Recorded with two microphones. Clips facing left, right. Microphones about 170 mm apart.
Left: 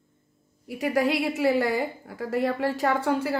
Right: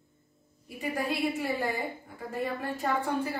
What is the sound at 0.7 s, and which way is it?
A woman's voice, 90° left.